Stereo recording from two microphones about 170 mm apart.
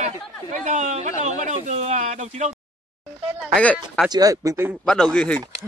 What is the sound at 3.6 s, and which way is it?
Speech, 10° left (ahead or behind).